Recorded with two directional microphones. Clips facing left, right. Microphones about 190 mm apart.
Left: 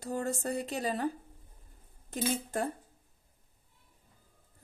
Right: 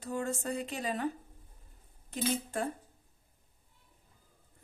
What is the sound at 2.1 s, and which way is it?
Speech, 45° left (ahead or behind).